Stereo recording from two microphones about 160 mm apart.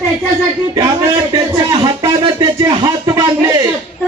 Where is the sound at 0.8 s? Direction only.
25° right (ahead or behind).